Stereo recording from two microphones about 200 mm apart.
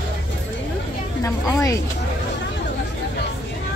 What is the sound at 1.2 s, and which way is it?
Speech, 15° left (ahead or behind).